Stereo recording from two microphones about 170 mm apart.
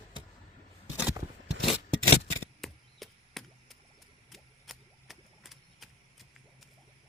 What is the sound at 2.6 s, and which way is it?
Chop, centre (ahead or behind).